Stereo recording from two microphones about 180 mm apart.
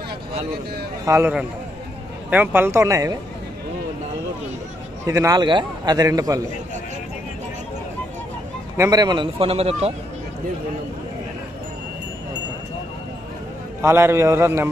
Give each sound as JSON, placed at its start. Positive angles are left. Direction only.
{"t": 1.0, "sound": "a man's voice", "side_deg": -15}
{"t": 5.0, "sound": "a man's voice", "side_deg": -20}
{"t": 8.7, "sound": "a man's voice", "side_deg": -20}
{"t": 13.7, "sound": "a man's voice", "side_deg": -15}